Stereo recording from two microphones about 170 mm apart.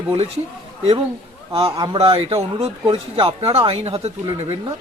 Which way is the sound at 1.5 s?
30° right (ahead or behind).